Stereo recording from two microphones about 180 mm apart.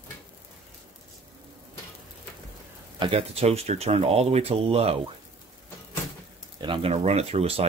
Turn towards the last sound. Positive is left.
turn(degrees=-35)  # may be behind; listen again after turning